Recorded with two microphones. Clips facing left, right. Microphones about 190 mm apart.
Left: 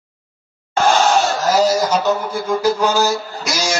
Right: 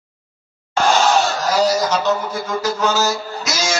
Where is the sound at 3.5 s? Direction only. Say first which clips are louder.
Left 2 dB; 15° left (ahead or behind).